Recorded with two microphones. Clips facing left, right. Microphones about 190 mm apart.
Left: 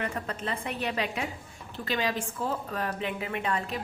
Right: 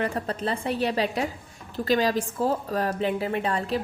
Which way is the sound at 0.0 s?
35° right (ahead or behind).